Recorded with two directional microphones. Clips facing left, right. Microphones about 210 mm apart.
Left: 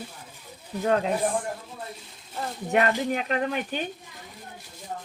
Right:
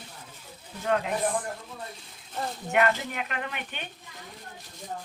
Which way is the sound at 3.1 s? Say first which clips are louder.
Left 8 dB; 35° left (ahead or behind).